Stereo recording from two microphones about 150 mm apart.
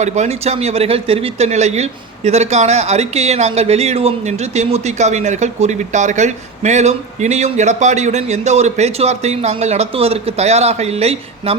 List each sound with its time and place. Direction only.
0.0 s speech: 45° right (ahead or behind)